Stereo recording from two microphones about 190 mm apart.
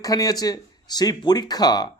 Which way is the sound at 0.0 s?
20° left (ahead or behind).